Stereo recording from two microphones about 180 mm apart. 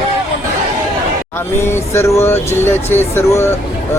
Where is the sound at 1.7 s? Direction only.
15° left (ahead or behind).